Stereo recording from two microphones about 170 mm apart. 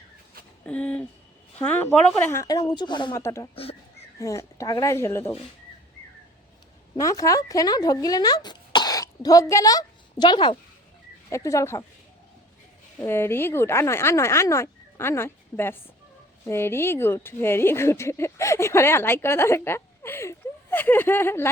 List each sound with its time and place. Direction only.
0.6 s a woman's voice: 5° left (ahead or behind); by 3.2 s 25° left (ahead or behind)
3.2 s a woman's voice: 15° left (ahead or behind)
3.5 s speech: 35° left (ahead or behind)
4.2 s a woman's voice: 20° left (ahead or behind)
6.9 s a woman's voice: 20° left (ahead or behind)
13.0 s a woman's voice: 15° left (ahead or behind)